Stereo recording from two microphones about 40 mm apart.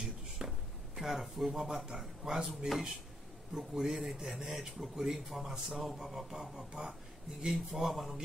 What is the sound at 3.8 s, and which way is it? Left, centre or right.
Speech, centre.